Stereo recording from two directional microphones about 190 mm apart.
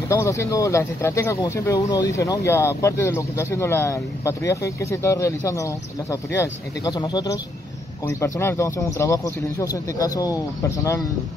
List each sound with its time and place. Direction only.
0.1 s speech: 15° left (ahead or behind)